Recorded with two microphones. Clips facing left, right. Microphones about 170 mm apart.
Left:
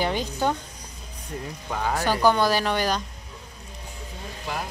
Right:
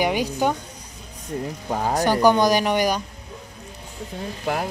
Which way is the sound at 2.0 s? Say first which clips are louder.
Right 4 dB; 15° right (ahead or behind).